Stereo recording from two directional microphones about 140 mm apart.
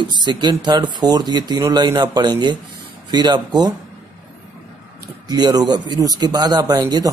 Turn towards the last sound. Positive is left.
turn(degrees=-30)  # may be behind; listen again after turning